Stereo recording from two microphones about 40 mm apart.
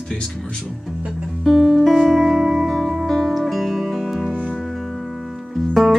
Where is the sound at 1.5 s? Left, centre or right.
Centre.